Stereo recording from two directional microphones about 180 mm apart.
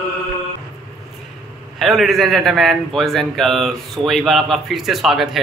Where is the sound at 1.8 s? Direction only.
Centre (ahead or behind).